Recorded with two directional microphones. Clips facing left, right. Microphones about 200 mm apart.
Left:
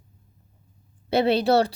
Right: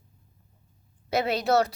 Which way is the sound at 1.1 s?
30° left (ahead or behind).